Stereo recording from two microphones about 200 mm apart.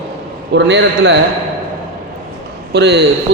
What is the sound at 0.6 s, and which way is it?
Speech, 60° right (ahead or behind).